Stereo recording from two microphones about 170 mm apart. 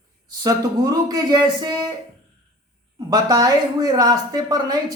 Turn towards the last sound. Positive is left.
turn(degrees=-25)  # may be behind; listen again after turning